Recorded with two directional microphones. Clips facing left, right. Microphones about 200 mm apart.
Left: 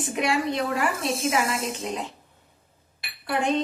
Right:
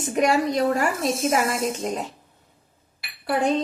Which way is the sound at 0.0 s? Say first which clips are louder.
Right 4 dB; 40° right (ahead or behind).